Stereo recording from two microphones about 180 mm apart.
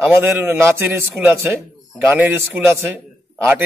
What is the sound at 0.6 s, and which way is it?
A man's voice, 15° right (ahead or behind).